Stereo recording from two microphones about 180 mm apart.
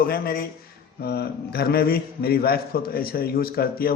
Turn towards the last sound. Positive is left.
turn(degrees=55)  # may be behind; listen again after turning